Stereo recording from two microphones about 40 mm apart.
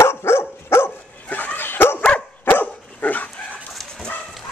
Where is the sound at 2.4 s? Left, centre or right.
Left.